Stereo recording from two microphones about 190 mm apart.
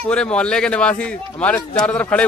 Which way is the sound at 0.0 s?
5° left (ahead or behind).